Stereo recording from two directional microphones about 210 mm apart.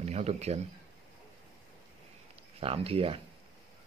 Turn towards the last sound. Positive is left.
turn(degrees=-25)  # may be behind; listen again after turning